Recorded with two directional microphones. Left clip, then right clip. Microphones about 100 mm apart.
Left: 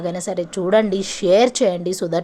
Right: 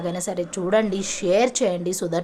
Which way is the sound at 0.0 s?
40° left (ahead or behind).